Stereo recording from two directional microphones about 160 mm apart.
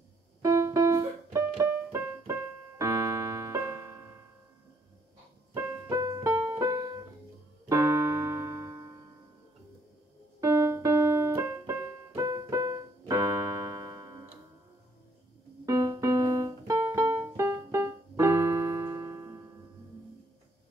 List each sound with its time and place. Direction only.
0.4 s music: 20° right (ahead or behind)
2.8 s keyboard: 20° right (ahead or behind)
5.5 s music: 20° right (ahead or behind)
7.6 s keyboard: 20° right (ahead or behind)
10.4 s keyboard: 20° right (ahead or behind)
15.6 s keyboard: 20° right (ahead or behind)